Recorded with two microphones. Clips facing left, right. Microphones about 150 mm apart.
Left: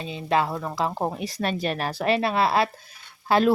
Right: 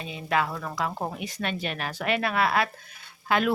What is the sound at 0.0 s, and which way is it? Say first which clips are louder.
Speech: left 3 dB; 30° left (ahead or behind).